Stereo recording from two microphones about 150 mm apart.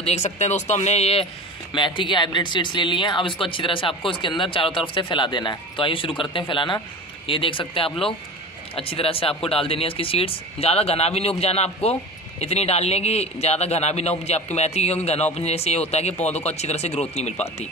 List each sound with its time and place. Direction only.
0.0 s a man's voice: 45° left (ahead or behind)
1.7 s a man's voice: 30° left (ahead or behind)